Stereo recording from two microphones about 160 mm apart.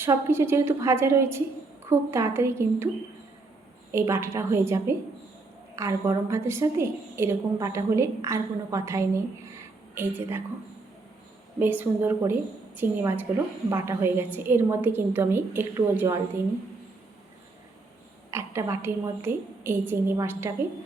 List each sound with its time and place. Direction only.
0.0 s a woman's voice: 15° right (ahead or behind)
3.9 s a woman's voice: 15° right (ahead or behind)
11.6 s a woman's voice: 15° right (ahead or behind)
18.3 s a woman's voice: 15° right (ahead or behind)